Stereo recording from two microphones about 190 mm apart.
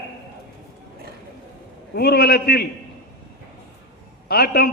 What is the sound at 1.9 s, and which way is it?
Speech, 55° left (ahead or behind).